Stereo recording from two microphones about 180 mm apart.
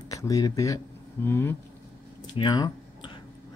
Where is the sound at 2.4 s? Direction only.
25° left (ahead or behind).